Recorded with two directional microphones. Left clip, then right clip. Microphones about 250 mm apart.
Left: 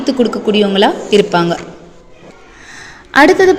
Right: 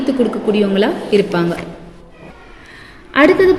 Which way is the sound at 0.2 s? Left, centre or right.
Left.